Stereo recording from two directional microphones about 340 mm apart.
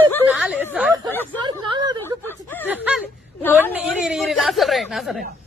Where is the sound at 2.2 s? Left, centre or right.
Centre.